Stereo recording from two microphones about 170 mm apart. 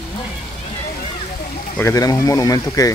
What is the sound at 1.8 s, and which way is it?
Speech, 20° left (ahead or behind).